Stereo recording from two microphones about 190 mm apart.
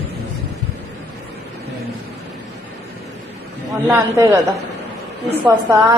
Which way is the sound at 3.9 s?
15° right (ahead or behind).